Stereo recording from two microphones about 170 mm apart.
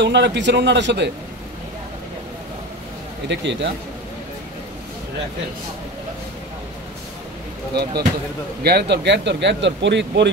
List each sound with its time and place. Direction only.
0.0 s speech: 90° right
3.3 s speech: 90° right
7.8 s speech: 25° right (ahead or behind)
8.6 s speech: 75° right (ahead or behind)